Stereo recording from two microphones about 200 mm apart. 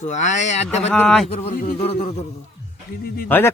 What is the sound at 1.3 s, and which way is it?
Speech, 30° left (ahead or behind).